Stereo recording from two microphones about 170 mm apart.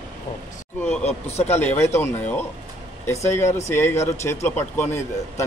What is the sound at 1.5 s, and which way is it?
A man's voice, 10° left (ahead or behind).